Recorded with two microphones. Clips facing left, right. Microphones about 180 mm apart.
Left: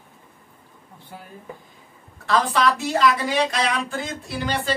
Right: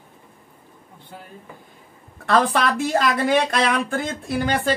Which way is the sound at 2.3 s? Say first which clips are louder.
Right 1 dB; 55° right (ahead or behind).